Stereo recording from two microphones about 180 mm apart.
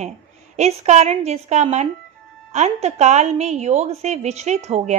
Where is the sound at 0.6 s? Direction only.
40° right (ahead or behind).